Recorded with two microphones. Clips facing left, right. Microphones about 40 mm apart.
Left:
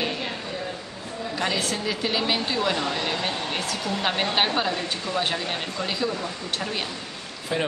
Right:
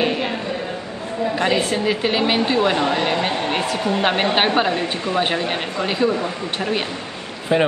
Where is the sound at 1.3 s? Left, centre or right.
Right.